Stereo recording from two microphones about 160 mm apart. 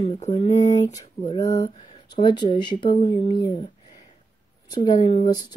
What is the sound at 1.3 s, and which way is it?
Speech, 20° left (ahead or behind).